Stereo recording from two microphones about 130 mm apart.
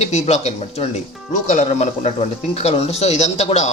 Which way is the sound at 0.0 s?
55° left (ahead or behind).